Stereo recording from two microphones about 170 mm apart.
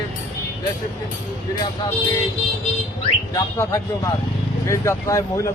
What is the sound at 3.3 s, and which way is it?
Speech, 20° left (ahead or behind).